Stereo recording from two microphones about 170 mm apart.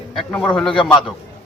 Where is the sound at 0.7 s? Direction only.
30° left (ahead or behind).